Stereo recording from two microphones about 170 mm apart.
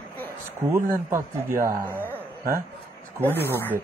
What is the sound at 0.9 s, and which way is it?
Speech, 15° right (ahead or behind).